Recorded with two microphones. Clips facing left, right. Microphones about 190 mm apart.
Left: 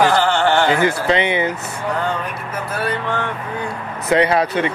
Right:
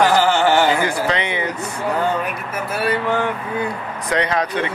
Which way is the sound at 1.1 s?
25° left (ahead or behind).